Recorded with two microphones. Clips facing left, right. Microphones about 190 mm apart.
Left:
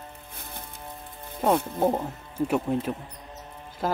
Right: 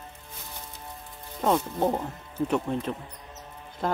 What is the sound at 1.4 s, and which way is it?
Speech, 5° left (ahead or behind).